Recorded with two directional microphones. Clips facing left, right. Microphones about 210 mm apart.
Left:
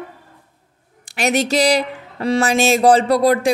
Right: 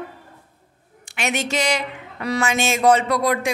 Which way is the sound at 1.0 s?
35° left (ahead or behind).